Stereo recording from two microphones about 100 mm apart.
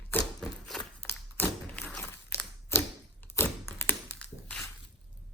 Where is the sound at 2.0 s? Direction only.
25° left (ahead or behind).